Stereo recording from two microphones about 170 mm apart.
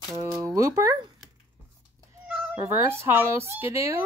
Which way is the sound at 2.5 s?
15° right (ahead or behind).